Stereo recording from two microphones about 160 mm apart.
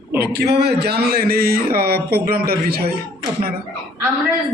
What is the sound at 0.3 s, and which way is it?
A man's voice, 90° right.